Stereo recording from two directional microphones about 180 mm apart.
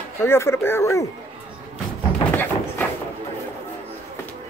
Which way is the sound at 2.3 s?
10° left (ahead or behind).